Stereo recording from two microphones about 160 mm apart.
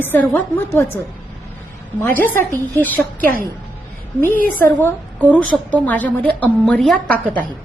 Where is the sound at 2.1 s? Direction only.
10° left (ahead or behind).